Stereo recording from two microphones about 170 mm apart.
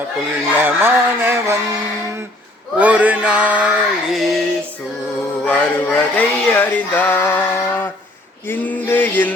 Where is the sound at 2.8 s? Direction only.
10° right (ahead or behind).